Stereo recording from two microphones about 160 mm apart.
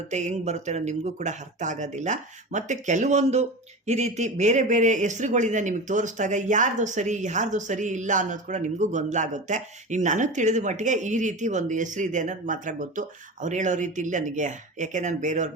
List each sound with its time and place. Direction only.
0.1 s speech: 45° right (ahead or behind)